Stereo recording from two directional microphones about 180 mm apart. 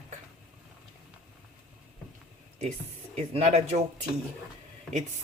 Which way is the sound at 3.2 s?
35° right (ahead or behind).